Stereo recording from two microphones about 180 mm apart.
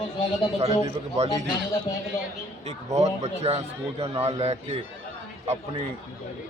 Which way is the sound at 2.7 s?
40° right (ahead or behind).